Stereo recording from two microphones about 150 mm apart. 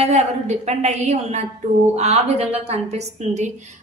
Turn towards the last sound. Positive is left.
turn(degrees=-50)  # may be behind; listen again after turning